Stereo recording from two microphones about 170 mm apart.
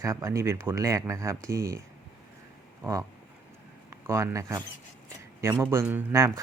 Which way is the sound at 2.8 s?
15° right (ahead or behind).